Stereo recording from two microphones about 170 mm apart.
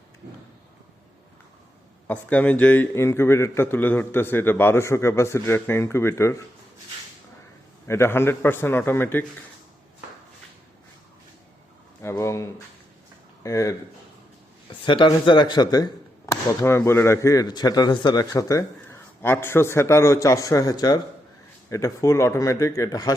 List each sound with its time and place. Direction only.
2.0 s a man's voice: 10° left (ahead or behind)
7.9 s a man's voice: 15° left (ahead or behind)
12.0 s a sound: 15° left (ahead or behind)
13.4 s speech: 20° left (ahead or behind)
14.8 s speech: 30° left (ahead or behind)